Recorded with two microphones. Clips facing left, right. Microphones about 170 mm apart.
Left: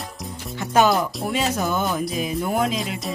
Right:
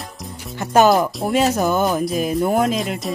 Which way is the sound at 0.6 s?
45° right (ahead or behind).